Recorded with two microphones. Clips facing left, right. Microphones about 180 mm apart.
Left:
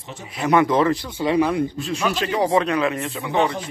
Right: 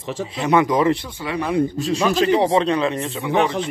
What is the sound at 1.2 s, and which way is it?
Speech, 25° left (ahead or behind).